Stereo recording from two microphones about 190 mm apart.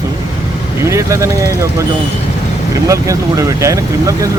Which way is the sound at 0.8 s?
15° right (ahead or behind).